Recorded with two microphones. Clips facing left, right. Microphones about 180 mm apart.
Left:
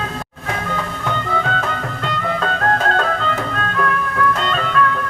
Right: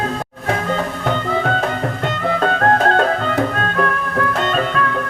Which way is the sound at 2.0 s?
40° right (ahead or behind).